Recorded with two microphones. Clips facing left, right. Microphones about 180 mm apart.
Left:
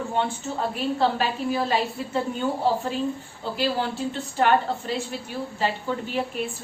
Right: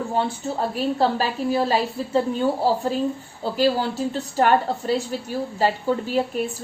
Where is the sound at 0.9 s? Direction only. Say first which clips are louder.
Even; 35° right (ahead or behind).